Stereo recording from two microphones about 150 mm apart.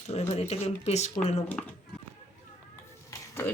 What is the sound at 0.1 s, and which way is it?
Speech, 45° left (ahead or behind).